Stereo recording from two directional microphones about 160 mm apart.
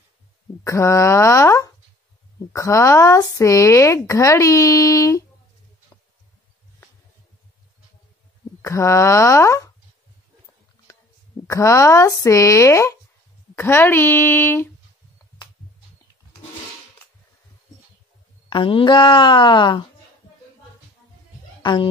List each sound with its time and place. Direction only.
0.7 s speech: 15° left (ahead or behind)
8.6 s speech: 20° left (ahead or behind)
10.9 s a sound: 20° left (ahead or behind)
11.4 s speech: 20° left (ahead or behind)
18.5 s speech: 35° left (ahead or behind)